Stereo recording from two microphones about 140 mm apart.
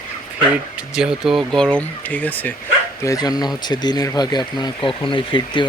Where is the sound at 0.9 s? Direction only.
5° right (ahead or behind).